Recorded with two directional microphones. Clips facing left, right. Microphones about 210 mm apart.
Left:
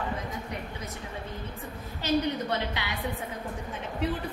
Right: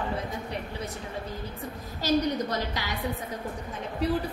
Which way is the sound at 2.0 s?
40° right (ahead or behind).